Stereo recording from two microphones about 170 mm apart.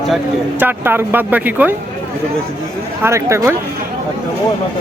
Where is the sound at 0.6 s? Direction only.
10° right (ahead or behind).